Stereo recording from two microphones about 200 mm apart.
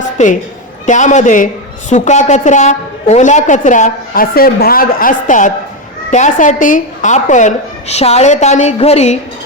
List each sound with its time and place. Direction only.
0.2 s a woman's voice: 35° left (ahead or behind)